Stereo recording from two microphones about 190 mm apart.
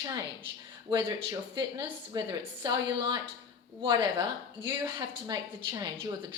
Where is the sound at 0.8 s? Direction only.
25° right (ahead or behind).